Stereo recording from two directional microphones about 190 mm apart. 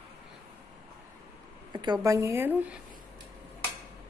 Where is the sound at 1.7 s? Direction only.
20° right (ahead or behind).